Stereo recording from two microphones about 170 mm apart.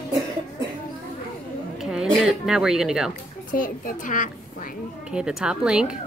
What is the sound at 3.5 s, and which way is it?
A woman's voice, 55° left (ahead or behind).